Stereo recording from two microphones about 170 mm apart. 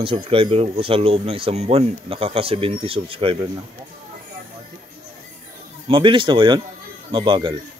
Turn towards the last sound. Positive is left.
turn(degrees=-25)  # may be behind; listen again after turning